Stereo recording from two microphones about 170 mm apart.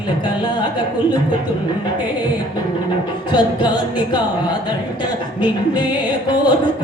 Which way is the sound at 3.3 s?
25° left (ahead or behind).